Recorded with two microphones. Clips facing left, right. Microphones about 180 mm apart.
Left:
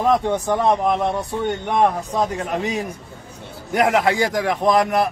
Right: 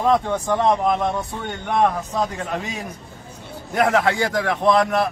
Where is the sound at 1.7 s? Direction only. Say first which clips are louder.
Right 1 dB; 20° left (ahead or behind).